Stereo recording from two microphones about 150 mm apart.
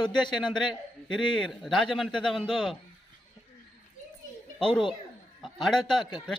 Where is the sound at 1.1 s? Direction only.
Centre (ahead or behind).